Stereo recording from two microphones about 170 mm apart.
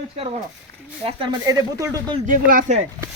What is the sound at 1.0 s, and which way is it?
Speech, 30° right (ahead or behind).